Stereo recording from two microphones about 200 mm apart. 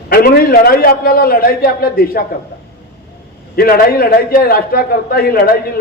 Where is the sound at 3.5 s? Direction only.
50° left (ahead or behind).